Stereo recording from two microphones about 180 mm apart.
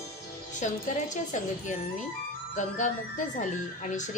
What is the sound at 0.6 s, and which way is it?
Speech, 45° left (ahead or behind).